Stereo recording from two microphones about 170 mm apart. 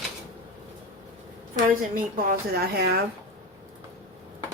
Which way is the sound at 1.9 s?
55° right (ahead or behind).